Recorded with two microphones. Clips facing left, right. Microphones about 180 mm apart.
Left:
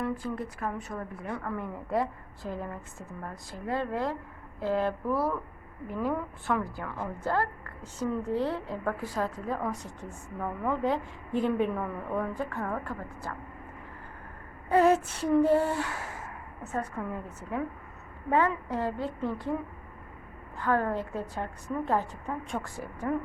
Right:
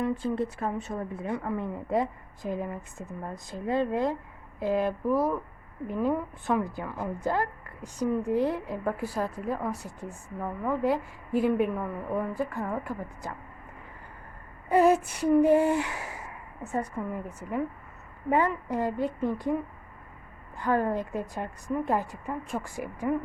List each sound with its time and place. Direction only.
0.0 s a woman's voice: 25° right (ahead or behind)
14.7 s a woman's voice: 10° right (ahead or behind)
20.6 s a woman's voice: 15° right (ahead or behind)